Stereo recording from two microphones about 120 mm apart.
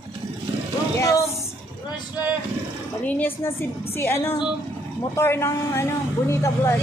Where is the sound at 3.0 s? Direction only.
15° left (ahead or behind).